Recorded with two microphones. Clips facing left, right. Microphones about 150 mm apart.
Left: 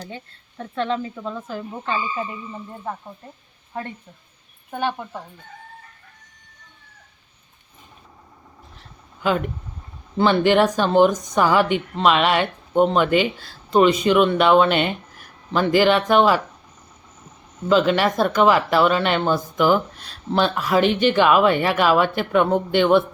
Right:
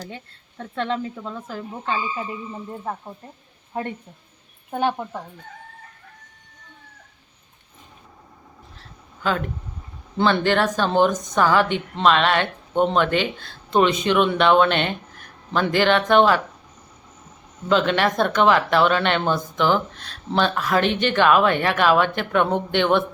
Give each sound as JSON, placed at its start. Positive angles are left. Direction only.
{"t": 0.6, "sound": "speech", "side_deg": 5}
{"t": 4.7, "sound": "a woman's voice", "side_deg": -15}
{"t": 10.2, "sound": "a woman's voice", "side_deg": 10}
{"t": 17.7, "sound": "a woman's voice", "side_deg": 5}